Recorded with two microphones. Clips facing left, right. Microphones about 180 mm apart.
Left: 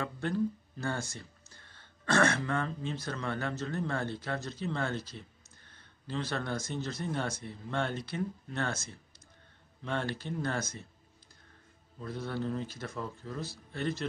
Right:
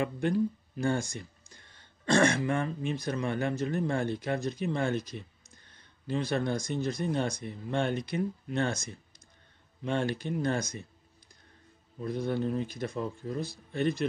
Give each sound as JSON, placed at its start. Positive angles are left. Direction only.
{"t": 0.0, "sound": "speech", "side_deg": -15}
{"t": 12.0, "sound": "speech", "side_deg": -15}